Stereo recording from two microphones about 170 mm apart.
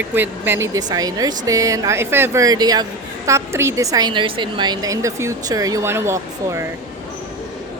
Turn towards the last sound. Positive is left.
turn(degrees=-15)  # may be behind; listen again after turning